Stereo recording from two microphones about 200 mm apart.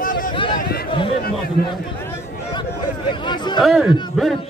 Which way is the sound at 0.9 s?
25° left (ahead or behind).